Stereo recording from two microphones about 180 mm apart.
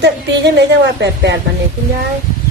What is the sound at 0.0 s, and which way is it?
A woman's voice, 75° right (ahead or behind).